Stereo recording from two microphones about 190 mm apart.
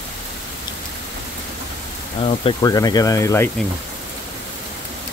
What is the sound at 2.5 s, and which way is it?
Speech, 20° left (ahead or behind).